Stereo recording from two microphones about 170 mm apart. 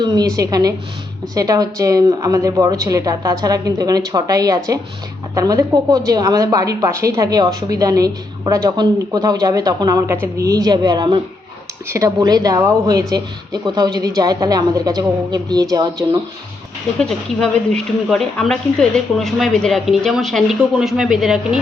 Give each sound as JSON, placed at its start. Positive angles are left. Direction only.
{"t": 0.0, "sound": "a woman's voice", "side_deg": -25}
{"t": 17.0, "sound": "a woman's voice", "side_deg": 5}